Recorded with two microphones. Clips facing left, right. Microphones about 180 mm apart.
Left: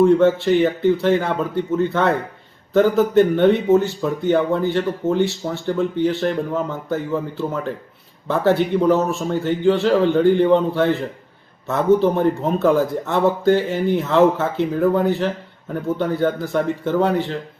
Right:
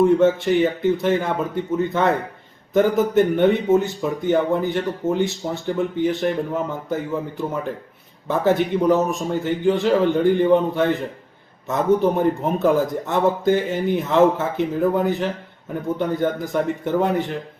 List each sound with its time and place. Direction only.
0.0 s speech: 20° right (ahead or behind)